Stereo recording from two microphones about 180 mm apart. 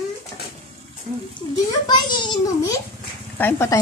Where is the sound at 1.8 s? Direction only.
25° left (ahead or behind).